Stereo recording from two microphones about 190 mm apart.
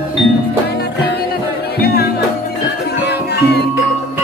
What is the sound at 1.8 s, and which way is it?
Music, 55° left (ahead or behind).